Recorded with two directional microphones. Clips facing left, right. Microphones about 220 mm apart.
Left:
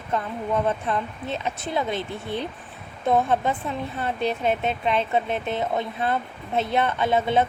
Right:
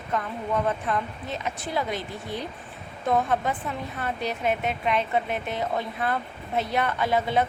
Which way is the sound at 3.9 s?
25° left (ahead or behind).